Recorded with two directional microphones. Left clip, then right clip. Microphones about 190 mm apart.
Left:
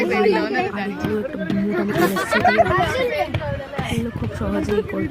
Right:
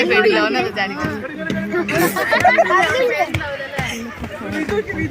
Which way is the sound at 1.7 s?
35° right (ahead or behind).